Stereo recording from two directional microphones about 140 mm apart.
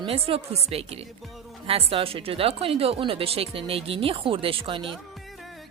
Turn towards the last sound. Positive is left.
turn(degrees=-40)  # may be behind; listen again after turning